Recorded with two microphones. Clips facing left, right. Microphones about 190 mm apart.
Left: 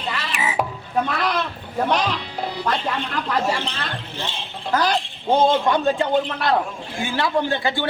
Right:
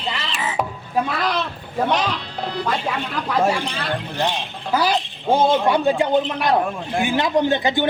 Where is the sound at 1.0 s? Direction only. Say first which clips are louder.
Even; 5° right (ahead or behind).